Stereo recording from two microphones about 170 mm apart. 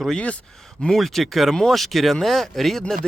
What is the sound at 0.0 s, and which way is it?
Speech, 5° left (ahead or behind).